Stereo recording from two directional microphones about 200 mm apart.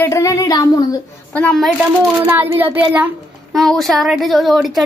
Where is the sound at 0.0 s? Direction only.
15° left (ahead or behind).